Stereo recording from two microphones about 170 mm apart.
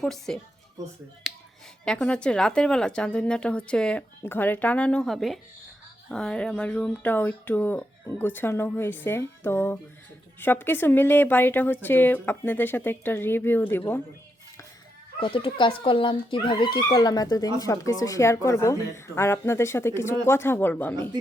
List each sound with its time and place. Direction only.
0.0 s speech: 5° left (ahead or behind)
1.2 s finger snapping: centre (ahead or behind)
1.8 s speech: 5° left (ahead or behind)
15.2 s speech: 30° left (ahead or behind); by 21.1 s 10° left (ahead or behind)